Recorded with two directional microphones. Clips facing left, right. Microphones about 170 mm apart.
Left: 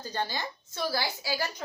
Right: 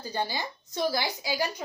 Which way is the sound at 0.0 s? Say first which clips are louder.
Right 2 dB; 10° right (ahead or behind).